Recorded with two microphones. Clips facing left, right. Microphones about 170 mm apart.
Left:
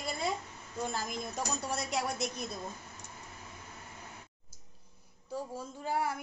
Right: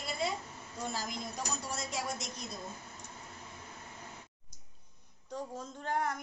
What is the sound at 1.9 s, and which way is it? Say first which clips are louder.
Speech: left 4 dB; 65° left (ahead or behind).